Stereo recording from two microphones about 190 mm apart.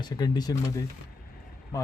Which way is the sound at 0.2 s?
20° left (ahead or behind).